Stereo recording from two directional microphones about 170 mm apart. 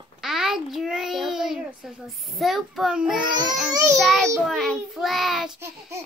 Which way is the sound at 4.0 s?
Centre (ahead or behind).